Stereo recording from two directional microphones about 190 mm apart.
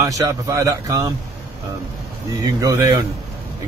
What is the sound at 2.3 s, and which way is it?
Speech, 20° right (ahead or behind).